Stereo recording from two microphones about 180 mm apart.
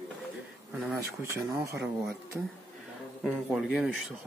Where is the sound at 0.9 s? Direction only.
15° right (ahead or behind).